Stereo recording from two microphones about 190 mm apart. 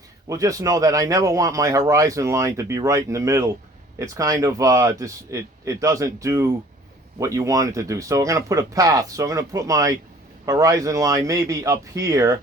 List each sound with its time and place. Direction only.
0.3 s a man's voice: 15° right (ahead or behind)